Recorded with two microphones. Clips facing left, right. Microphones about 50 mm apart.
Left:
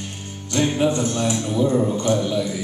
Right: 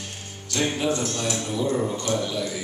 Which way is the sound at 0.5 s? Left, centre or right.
Centre.